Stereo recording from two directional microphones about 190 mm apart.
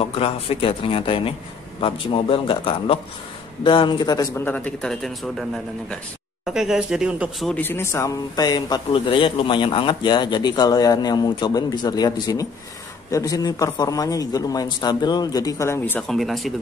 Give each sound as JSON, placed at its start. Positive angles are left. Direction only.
{"t": 0.0, "sound": "speech", "side_deg": 30}
{"t": 6.4, "sound": "speech", "side_deg": 0}